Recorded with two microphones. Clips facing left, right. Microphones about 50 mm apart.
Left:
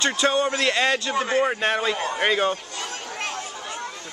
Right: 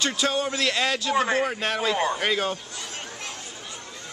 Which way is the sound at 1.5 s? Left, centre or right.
Left.